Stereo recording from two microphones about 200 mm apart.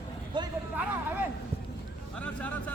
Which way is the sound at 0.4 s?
20° right (ahead or behind).